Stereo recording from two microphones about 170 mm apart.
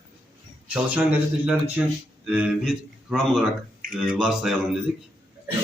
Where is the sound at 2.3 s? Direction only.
5° right (ahead or behind).